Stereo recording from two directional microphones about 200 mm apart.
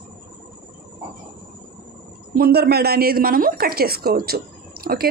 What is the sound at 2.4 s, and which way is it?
A woman's voice, 50° right (ahead or behind).